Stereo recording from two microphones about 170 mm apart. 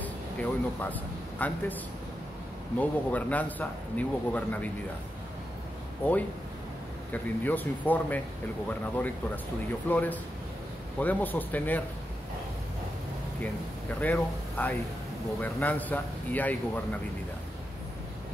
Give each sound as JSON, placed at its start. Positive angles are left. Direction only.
{"t": 0.0, "sound": "a sound", "side_deg": 10}
{"t": 1.4, "sound": "a man's voice", "side_deg": 10}
{"t": 2.8, "sound": "a man's voice", "side_deg": 10}
{"t": 7.1, "sound": "a man's voice", "side_deg": 10}
{"t": 13.9, "sound": "a man's voice", "side_deg": 10}